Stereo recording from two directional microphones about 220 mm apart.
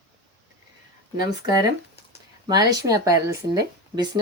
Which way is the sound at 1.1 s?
15° right (ahead or behind).